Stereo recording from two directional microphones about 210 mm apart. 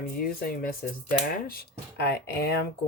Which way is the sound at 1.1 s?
45° left (ahead or behind).